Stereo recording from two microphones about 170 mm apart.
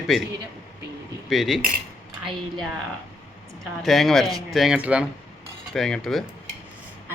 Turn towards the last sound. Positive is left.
turn(degrees=5)  # may be behind; listen again after turning